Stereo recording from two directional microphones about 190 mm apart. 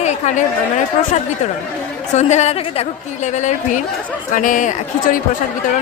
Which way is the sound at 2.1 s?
35° left (ahead or behind).